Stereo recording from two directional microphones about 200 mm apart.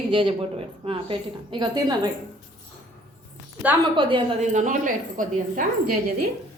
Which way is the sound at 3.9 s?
25° right (ahead or behind).